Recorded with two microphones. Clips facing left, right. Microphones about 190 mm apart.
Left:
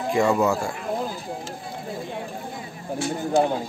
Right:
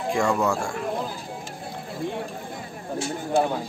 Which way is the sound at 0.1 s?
5° left (ahead or behind).